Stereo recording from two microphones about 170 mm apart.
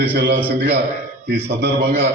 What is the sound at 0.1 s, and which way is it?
Speech, 90° right.